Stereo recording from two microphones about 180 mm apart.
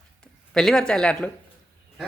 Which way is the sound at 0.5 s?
5° left (ahead or behind).